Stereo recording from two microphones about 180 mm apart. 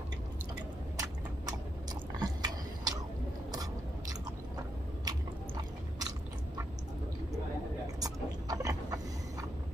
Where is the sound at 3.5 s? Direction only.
20° right (ahead or behind).